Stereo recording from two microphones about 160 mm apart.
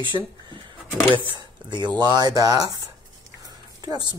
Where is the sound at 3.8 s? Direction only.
25° right (ahead or behind).